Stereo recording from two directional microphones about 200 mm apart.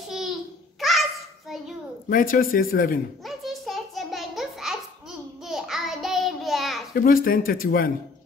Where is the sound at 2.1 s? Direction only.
45° left (ahead or behind).